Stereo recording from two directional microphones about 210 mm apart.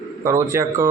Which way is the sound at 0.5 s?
10° right (ahead or behind).